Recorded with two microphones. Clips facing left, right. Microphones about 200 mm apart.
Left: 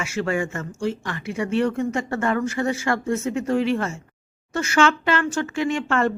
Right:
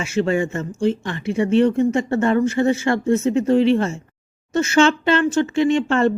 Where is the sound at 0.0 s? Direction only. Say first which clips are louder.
Right 5 dB; 25° right (ahead or behind).